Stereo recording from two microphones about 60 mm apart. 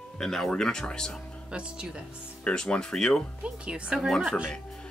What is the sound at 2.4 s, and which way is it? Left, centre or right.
Speech, centre.